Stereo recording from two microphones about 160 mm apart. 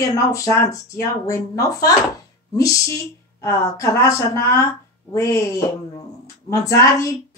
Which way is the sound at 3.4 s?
20° left (ahead or behind).